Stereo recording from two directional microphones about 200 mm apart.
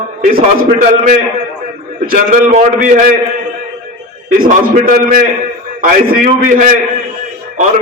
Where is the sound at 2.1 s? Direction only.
45° right (ahead or behind).